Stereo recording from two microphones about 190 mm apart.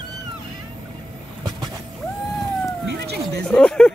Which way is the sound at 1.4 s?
20° right (ahead or behind).